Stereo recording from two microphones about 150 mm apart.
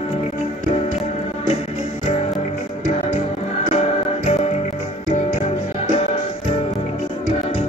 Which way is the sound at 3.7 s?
45° left (ahead or behind).